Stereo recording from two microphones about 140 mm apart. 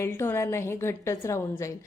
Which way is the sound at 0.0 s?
15° left (ahead or behind).